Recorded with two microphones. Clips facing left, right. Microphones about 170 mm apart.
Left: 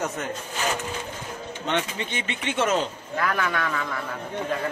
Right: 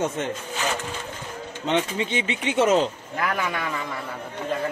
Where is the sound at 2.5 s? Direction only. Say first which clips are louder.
Right 4 dB; 35° right (ahead or behind).